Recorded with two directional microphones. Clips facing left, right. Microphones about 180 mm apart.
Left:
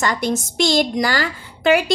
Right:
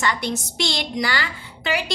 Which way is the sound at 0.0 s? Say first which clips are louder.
Left 4 dB; 45° left (ahead or behind).